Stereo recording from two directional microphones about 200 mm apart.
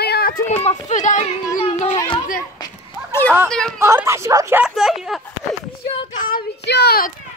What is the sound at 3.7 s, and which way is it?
Speech, 15° right (ahead or behind).